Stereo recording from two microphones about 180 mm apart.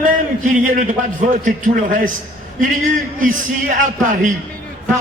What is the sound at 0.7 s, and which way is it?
A man's voice, 45° right (ahead or behind).